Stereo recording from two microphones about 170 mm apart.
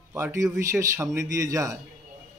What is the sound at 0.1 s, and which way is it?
A man's voice, 15° right (ahead or behind).